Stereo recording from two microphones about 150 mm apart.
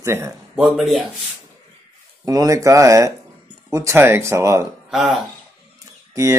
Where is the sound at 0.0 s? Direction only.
20° right (ahead or behind).